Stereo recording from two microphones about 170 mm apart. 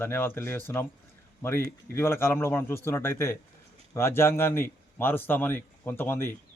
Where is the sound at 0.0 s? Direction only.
10° left (ahead or behind).